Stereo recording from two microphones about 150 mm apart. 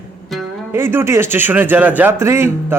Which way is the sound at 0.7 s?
15° right (ahead or behind).